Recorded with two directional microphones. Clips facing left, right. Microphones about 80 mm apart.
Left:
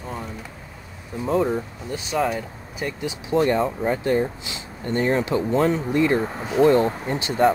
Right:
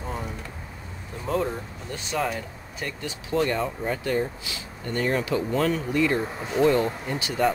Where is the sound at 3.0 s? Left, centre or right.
Left.